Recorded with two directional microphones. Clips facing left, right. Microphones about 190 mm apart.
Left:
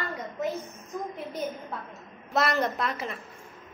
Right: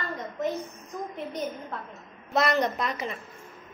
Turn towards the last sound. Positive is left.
turn(degrees=0)  # may be behind; listen again after turning